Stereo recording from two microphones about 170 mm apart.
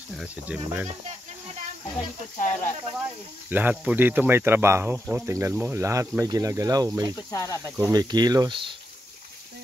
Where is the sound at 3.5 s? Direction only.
10° right (ahead or behind).